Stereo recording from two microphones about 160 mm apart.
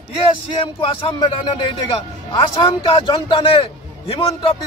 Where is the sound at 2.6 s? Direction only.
30° left (ahead or behind).